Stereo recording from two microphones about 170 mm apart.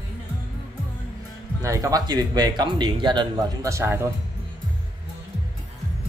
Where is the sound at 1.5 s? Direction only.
20° right (ahead or behind).